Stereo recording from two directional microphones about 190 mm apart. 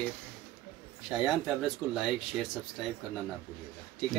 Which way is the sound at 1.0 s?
Centre (ahead or behind).